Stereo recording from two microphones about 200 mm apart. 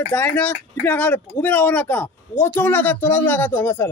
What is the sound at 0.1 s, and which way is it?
Speech, 10° left (ahead or behind).